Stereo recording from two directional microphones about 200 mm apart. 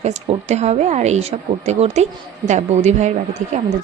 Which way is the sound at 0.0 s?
35° right (ahead or behind).